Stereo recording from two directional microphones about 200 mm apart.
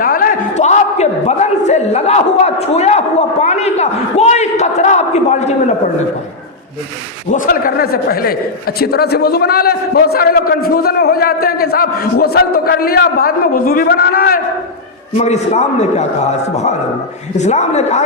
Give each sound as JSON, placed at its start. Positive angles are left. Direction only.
{"t": 0.0, "sound": "a sound", "side_deg": 45}
{"t": 7.3, "sound": "a man's voice", "side_deg": 45}
{"t": 15.1, "sound": "a man's voice", "side_deg": 35}